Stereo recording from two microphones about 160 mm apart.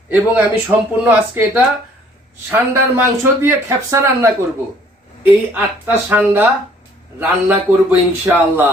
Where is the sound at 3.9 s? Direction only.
15° right (ahead or behind).